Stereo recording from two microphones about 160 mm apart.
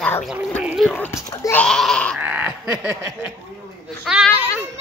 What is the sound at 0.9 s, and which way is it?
Speech, 15° left (ahead or behind).